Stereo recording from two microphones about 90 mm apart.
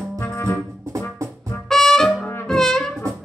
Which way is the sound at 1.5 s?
5° left (ahead or behind).